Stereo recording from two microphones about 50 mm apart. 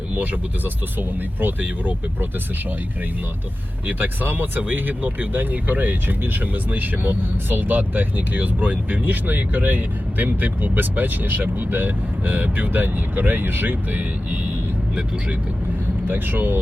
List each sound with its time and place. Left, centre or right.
0.1 s speech: right
3.8 s speech: right
16.0 s speech: right